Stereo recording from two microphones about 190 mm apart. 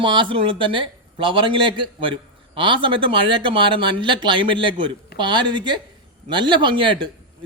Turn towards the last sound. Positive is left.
turn(degrees=-25)  # may be behind; listen again after turning